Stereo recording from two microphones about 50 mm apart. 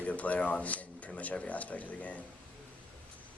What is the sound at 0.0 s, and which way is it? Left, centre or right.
Speech, left.